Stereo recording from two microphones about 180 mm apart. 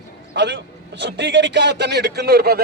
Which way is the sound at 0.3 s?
80° right.